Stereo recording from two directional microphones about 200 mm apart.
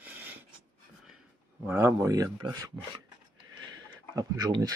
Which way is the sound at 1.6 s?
15° right (ahead or behind).